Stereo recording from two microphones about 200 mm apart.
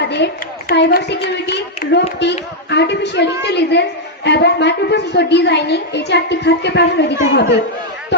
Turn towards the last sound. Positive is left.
turn(degrees=55)  # may be behind; listen again after turning